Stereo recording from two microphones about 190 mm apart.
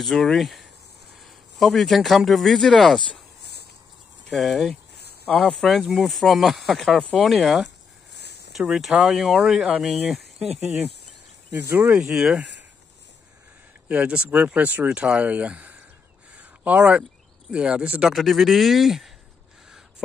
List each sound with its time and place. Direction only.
0.0 s speech: centre (ahead or behind)
4.3 s speech: centre (ahead or behind)
7.6 s a sound: 60° left (ahead or behind)
8.5 s speech: centre (ahead or behind)
10.4 s speech: 35° right (ahead or behind)
11.7 s speech: 15° right (ahead or behind)
13.8 s speech: 5° right (ahead or behind)
16.3 s a sound: 5° right (ahead or behind)
17.5 s speech: 5° right (ahead or behind)